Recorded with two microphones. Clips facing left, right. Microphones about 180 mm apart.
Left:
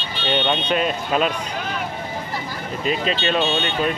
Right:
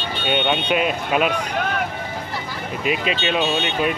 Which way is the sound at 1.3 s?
60° right (ahead or behind).